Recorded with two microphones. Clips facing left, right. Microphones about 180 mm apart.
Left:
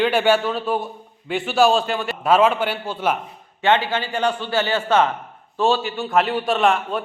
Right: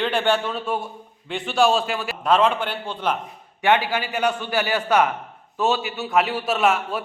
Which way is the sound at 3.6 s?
15° right (ahead or behind).